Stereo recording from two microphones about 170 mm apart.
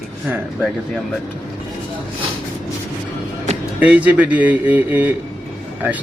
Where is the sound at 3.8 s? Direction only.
10° right (ahead or behind).